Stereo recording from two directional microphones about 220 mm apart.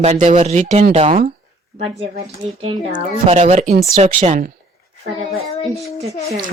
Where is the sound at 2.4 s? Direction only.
25° right (ahead or behind).